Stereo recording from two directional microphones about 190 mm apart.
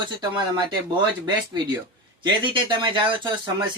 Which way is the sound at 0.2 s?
25° right (ahead or behind).